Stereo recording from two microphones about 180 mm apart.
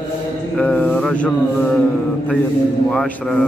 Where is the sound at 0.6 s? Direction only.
5° left (ahead or behind).